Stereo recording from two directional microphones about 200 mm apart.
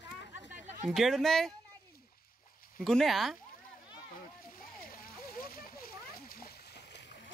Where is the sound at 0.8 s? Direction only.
Centre (ahead or behind).